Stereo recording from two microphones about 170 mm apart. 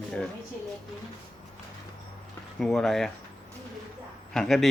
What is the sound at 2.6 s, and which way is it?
Speech, centre (ahead or behind).